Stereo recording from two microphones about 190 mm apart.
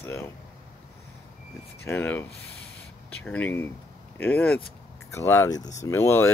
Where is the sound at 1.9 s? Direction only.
10° left (ahead or behind).